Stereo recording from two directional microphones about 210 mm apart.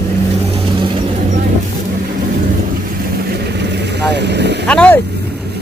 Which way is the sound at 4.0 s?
55° right (ahead or behind).